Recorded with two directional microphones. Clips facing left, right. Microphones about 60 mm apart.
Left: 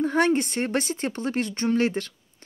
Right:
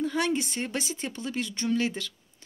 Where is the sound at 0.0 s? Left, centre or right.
Left.